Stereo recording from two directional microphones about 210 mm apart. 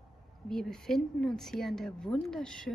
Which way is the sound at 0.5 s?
Centre (ahead or behind).